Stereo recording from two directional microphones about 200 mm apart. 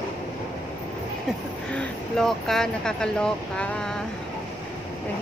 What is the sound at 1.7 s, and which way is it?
Speech, 5° left (ahead or behind).